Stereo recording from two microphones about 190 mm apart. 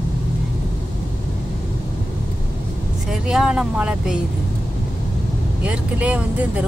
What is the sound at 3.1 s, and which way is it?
Speech, 5° right (ahead or behind).